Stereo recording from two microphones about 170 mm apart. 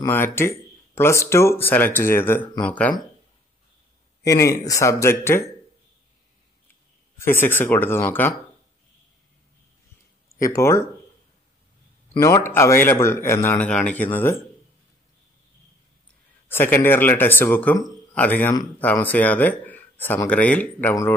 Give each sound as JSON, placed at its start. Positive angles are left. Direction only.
{"t": 0.0, "sound": "speech", "side_deg": 15}
{"t": 4.2, "sound": "speech", "side_deg": 15}
{"t": 7.2, "sound": "speech", "side_deg": 15}
{"t": 10.3, "sound": "speech", "side_deg": 15}
{"t": 12.2, "sound": "speech", "side_deg": 15}
{"t": 16.4, "sound": "speech", "side_deg": 10}